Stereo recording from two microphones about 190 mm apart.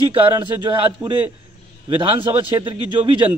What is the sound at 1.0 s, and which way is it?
Speech, centre (ahead or behind).